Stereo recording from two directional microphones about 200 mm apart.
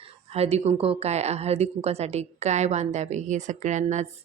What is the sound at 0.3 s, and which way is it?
A woman's voice, 30° right (ahead or behind).